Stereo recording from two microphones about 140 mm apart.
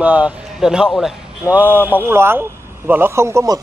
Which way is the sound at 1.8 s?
15° left (ahead or behind).